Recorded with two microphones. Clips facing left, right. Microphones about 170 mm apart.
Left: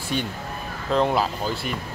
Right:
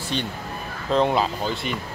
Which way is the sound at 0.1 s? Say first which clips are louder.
Left 1 dB; 10° left (ahead or behind).